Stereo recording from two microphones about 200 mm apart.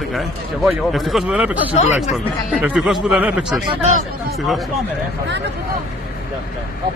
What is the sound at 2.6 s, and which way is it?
A man's voice, 5° right (ahead or behind).